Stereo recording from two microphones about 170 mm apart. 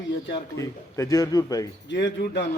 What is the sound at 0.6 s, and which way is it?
A man's voice, 20° left (ahead or behind).